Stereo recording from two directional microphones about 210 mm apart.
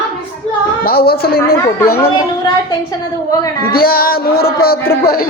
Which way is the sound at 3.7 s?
45° left (ahead or behind).